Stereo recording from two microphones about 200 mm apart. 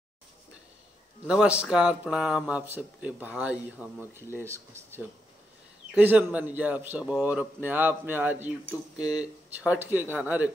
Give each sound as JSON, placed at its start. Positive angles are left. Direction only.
{"t": 1.2, "sound": "speech", "side_deg": -5}
{"t": 8.6, "sound": "speech", "side_deg": 20}
{"t": 9.2, "sound": "speech", "side_deg": -5}